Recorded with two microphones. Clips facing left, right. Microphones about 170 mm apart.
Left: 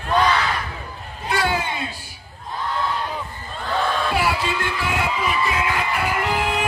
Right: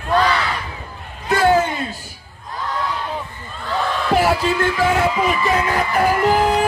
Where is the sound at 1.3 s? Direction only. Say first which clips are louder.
Right 8 dB; 45° right (ahead or behind).